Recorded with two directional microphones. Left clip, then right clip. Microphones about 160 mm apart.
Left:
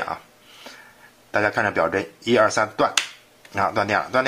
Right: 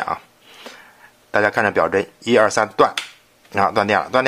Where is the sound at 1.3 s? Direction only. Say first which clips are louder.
Right 4 dB; 40° right (ahead or behind).